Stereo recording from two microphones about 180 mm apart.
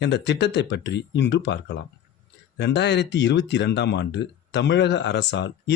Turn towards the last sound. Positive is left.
turn(degrees=80)